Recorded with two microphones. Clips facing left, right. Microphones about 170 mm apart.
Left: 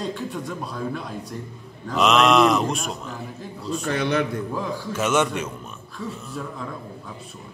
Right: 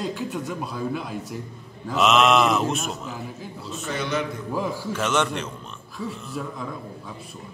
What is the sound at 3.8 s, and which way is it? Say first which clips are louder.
Speech: left 4 dB; 60° left (ahead or behind).